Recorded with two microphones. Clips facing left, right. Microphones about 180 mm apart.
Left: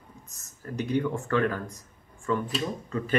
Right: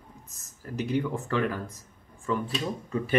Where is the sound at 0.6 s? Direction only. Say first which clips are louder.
Left 1 dB; 15° right (ahead or behind).